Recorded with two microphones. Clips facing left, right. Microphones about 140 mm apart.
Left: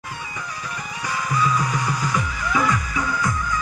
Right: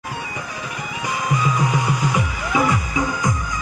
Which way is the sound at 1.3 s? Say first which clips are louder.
Right 1 dB; 15° right (ahead or behind).